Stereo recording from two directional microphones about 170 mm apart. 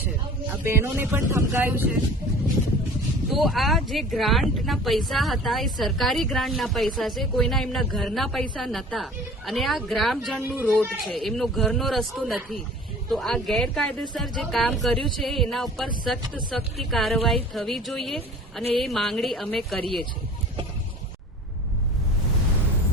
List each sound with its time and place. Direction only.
0.5 s speech: 15° right (ahead or behind)
3.2 s speech: centre (ahead or behind)